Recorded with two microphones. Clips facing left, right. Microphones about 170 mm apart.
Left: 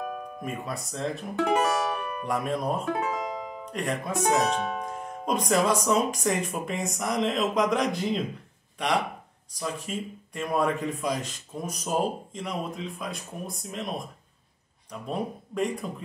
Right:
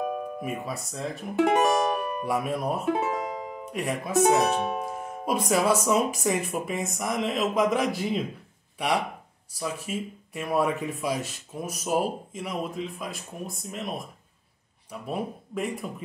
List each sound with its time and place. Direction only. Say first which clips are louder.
0.0 s speech: right 4 dB; 10° right (ahead or behind)
1.4 s music: right 3 dB; 20° right (ahead or behind)
2.2 s speech: left 1 dB; 10° right (ahead or behind)